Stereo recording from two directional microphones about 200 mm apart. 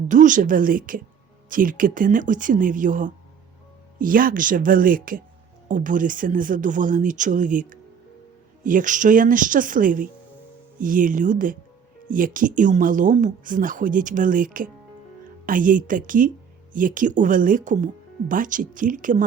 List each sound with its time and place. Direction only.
0.1 s a woman's voice: 40° right (ahead or behind)